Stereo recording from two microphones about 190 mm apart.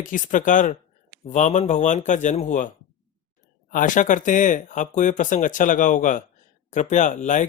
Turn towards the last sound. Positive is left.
turn(degrees=40)  # may be behind; listen again after turning